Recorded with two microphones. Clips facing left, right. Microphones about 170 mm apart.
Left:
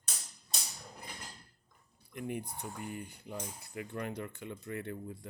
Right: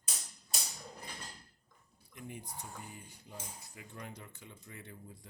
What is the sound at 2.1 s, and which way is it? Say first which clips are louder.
Cutlery: left 8 dB; 60° left (ahead or behind).